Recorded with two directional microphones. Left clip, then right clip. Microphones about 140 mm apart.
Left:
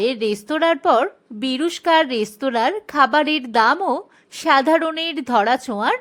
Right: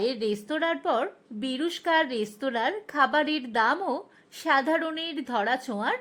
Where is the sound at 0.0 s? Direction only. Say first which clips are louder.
Left 7 dB; 25° left (ahead or behind).